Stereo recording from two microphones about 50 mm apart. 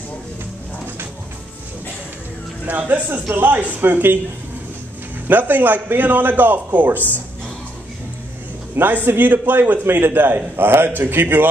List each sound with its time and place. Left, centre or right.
2.6 s a man's voice: right
3.8 s a man's voice: right
5.3 s a man's voice: right
8.7 s a man's voice: right